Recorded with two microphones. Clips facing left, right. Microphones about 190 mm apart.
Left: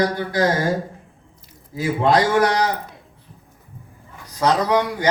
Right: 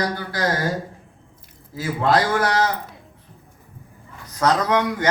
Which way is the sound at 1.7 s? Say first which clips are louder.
Left 2 dB; 20° left (ahead or behind).